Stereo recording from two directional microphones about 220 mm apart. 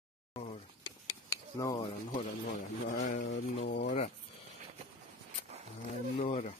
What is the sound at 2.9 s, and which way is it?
Speech, 35° left (ahead or behind).